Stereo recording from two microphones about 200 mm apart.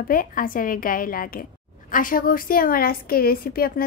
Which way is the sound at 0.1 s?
45° left (ahead or behind).